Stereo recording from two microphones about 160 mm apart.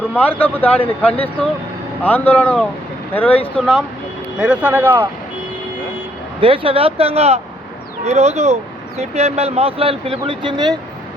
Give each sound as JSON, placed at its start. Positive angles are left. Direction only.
{"t": 0.1, "sound": "speech", "side_deg": 10}
{"t": 4.4, "sound": "speech", "side_deg": -10}
{"t": 6.4, "sound": "speech", "side_deg": -35}